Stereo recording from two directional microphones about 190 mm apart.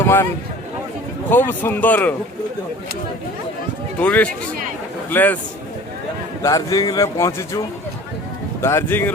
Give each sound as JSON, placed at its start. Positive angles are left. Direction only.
{"t": 0.0, "sound": "a sound", "side_deg": 15}
{"t": 1.3, "sound": "speech", "side_deg": 10}
{"t": 4.0, "sound": "speech", "side_deg": 5}
{"t": 6.4, "sound": "speech", "side_deg": 20}
{"t": 8.6, "sound": "speech", "side_deg": 10}